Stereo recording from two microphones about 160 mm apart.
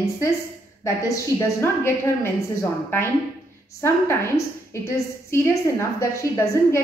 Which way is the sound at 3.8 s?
15° left (ahead or behind).